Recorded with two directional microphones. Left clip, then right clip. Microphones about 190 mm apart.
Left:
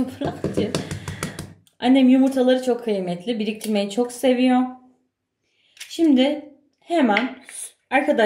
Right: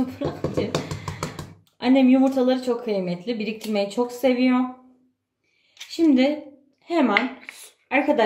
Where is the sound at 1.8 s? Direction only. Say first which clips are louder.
Left 1 dB; 15° left (ahead or behind).